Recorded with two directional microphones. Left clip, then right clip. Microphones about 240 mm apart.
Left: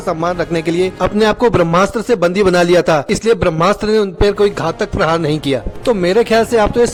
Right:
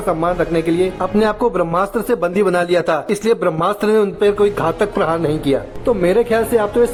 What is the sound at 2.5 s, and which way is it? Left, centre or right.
A man's voice, left.